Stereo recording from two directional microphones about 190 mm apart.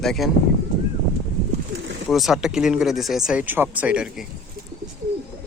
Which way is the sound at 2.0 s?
Centre (ahead or behind).